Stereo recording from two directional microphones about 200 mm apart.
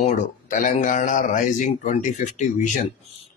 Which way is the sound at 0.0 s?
40° left (ahead or behind).